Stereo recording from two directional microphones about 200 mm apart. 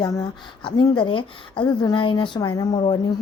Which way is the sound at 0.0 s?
20° left (ahead or behind).